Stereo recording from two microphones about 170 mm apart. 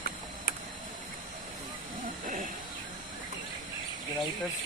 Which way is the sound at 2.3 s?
50° right (ahead or behind).